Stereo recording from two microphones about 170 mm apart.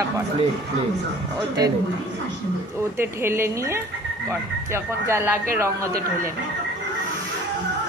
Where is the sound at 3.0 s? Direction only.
15° right (ahead or behind).